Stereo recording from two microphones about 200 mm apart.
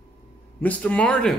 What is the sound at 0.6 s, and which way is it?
Speech, 5° left (ahead or behind).